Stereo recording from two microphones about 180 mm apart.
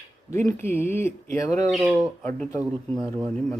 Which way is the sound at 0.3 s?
15° left (ahead or behind).